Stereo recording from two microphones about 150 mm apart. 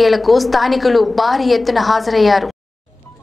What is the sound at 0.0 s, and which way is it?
A woman's voice, centre (ahead or behind).